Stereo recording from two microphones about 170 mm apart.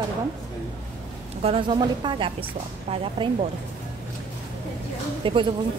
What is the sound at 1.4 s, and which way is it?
A woman's voice, 30° right (ahead or behind).